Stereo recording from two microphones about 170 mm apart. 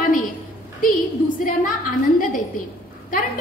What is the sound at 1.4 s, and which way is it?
Speech, 50° left (ahead or behind).